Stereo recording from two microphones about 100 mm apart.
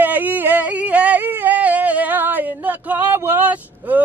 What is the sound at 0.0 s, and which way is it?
Yodeling, 15° right (ahead or behind).